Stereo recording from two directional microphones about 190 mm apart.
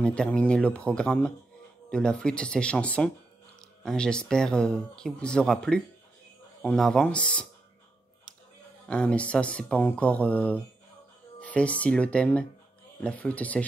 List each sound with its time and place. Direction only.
0.0 s speech: 5° left (ahead or behind)
8.8 s speech: 5° left (ahead or behind)